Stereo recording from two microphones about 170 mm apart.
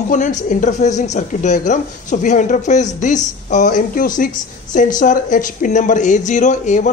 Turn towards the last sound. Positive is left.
turn(degrees=45)  # may be behind; listen again after turning